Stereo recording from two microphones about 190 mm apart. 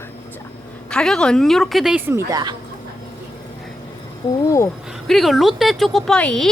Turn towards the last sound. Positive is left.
turn(degrees=5)  # may be behind; listen again after turning